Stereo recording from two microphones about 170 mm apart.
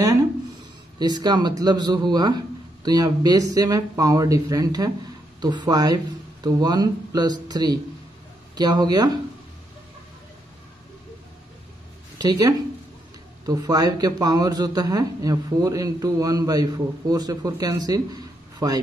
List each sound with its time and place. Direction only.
0.9 s a man's voice: 25° right (ahead or behind)
12.2 s a man's voice: 20° right (ahead or behind)